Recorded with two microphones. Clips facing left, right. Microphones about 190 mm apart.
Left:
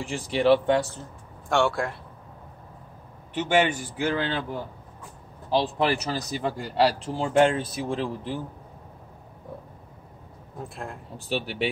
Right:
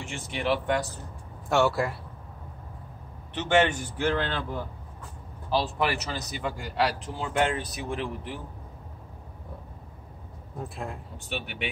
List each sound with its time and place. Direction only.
0.0 s speech: 35° left (ahead or behind)
1.5 s speech: 5° right (ahead or behind)
3.3 s a man's voice: 10° left (ahead or behind)
6.0 s speech: 35° left (ahead or behind)
10.6 s speech: centre (ahead or behind)
11.1 s speech: 35° left (ahead or behind)